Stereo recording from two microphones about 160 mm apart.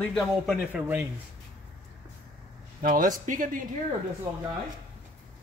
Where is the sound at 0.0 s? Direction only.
Centre (ahead or behind).